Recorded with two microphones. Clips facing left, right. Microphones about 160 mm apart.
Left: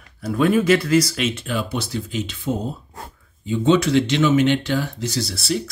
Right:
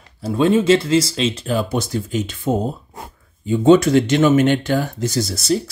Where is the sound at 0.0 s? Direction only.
25° right (ahead or behind).